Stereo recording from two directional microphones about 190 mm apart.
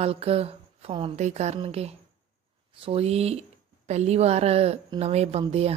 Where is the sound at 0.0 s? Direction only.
30° right (ahead or behind).